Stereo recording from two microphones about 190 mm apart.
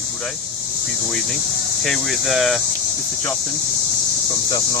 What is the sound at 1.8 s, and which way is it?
Speech, centre (ahead or behind).